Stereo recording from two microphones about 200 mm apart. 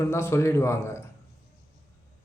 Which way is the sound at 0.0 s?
15° left (ahead or behind).